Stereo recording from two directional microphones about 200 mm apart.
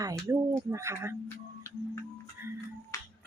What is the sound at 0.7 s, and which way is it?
Speech, 15° right (ahead or behind).